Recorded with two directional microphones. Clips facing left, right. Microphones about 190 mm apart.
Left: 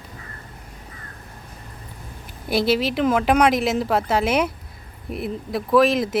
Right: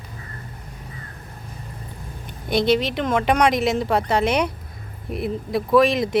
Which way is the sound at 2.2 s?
5° left (ahead or behind).